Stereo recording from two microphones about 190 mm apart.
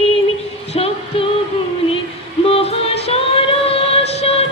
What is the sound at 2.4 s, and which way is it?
Music, 30° left (ahead or behind).